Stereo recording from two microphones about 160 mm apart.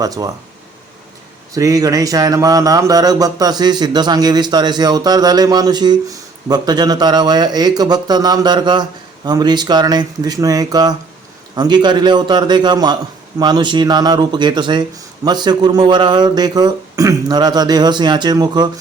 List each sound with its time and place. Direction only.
0.0 s speech: 20° right (ahead or behind)
1.5 s speech: 20° right (ahead or behind)